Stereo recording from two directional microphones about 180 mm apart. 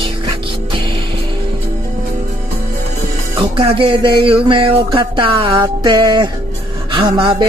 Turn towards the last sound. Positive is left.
turn(degrees=-30)  # may be behind; listen again after turning